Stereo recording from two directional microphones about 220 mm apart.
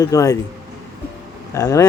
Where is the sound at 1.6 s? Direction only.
15° left (ahead or behind).